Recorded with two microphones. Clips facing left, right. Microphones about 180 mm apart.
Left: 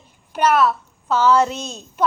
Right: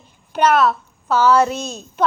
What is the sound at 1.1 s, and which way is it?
Speech, 20° left (ahead or behind).